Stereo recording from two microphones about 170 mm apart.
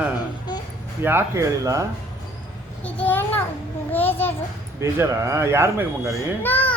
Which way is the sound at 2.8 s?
10° left (ahead or behind).